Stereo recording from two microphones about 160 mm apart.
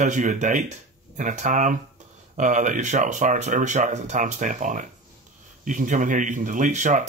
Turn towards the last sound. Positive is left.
turn(degrees=-50)  # may be behind; listen again after turning